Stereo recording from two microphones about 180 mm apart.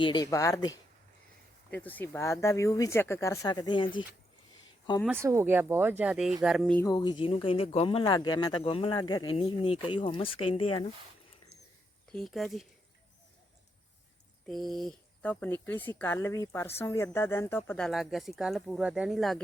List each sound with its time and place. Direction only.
0.0 s speech: 25° left (ahead or behind)
5.0 s speech: 15° right (ahead or behind); by 6.8 s 5° left (ahead or behind)
6.8 s speech: 25° left (ahead or behind)
12.1 s speech: centre (ahead or behind)
14.4 s speech: centre (ahead or behind)